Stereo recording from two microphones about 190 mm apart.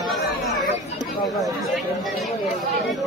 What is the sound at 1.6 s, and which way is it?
Chatter, centre (ahead or behind).